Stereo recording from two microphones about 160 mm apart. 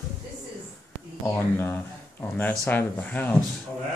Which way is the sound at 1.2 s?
15° left (ahead or behind).